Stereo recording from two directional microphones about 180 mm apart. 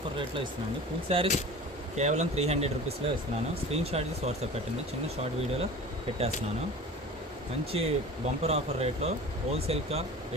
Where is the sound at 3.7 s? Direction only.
35° right (ahead or behind).